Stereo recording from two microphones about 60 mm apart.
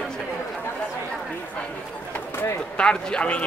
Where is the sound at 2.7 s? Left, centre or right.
Centre.